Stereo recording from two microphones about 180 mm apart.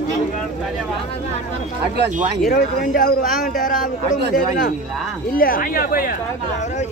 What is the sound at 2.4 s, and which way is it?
Speech, 50° left (ahead or behind).